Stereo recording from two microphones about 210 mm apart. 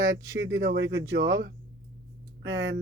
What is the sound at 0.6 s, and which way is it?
Speech, 55° right (ahead or behind).